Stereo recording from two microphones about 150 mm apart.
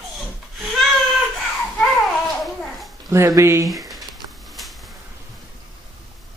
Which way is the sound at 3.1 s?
20° right (ahead or behind).